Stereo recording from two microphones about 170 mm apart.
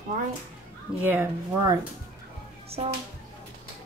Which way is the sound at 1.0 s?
10° right (ahead or behind).